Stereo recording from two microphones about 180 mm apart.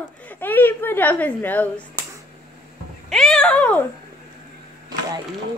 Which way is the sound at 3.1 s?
Centre (ahead or behind).